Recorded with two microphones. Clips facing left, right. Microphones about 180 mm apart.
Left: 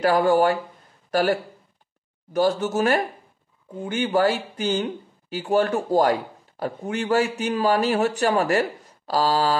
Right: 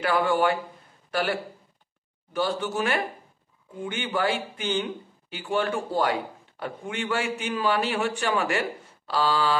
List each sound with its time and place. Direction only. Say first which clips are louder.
0.0 s a man's voice: left 5 dB; 40° left (ahead or behind)